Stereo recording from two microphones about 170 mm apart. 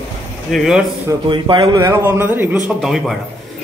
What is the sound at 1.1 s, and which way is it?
A man's voice, 25° right (ahead or behind).